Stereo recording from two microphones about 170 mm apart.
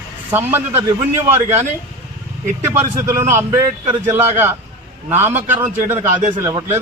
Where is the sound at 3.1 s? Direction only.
15° right (ahead or behind).